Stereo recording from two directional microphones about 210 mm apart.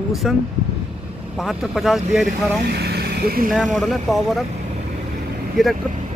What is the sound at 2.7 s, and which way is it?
Speech, 50° right (ahead or behind).